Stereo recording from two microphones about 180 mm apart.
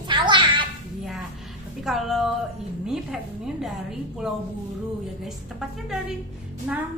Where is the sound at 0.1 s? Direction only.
25° right (ahead or behind).